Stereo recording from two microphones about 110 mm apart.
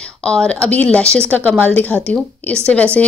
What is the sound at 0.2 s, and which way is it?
Speech, 10° left (ahead or behind).